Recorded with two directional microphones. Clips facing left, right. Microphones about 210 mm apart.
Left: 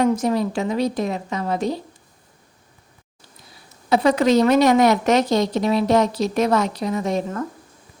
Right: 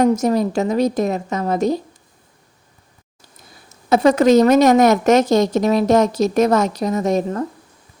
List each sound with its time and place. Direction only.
0.0 s a woman's voice: 45° right (ahead or behind)
3.8 s a woman's voice: 45° right (ahead or behind)